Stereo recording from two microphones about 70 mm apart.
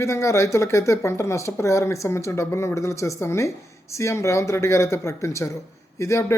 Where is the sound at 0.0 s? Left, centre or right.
Left.